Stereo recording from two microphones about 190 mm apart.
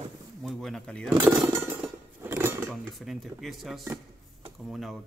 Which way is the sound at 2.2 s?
10° right (ahead or behind).